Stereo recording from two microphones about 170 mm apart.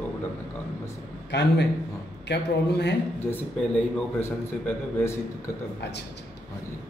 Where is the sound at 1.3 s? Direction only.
90° left.